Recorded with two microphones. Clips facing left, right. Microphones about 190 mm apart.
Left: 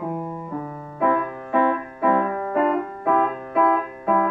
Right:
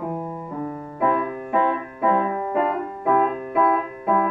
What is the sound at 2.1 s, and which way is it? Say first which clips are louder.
Music: left 1 dB; 20° right (ahead or behind).